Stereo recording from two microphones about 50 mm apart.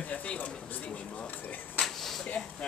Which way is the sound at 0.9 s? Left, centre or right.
Left.